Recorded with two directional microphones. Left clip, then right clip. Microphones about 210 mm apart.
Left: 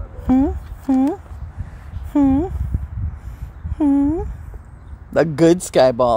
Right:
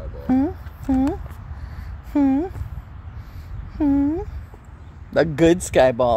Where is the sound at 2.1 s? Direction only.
20° left (ahead or behind).